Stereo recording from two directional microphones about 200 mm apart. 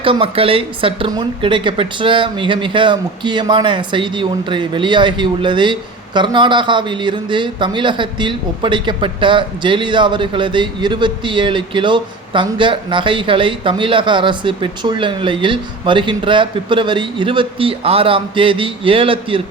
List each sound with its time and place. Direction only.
0.0 s speech: 25° right (ahead or behind)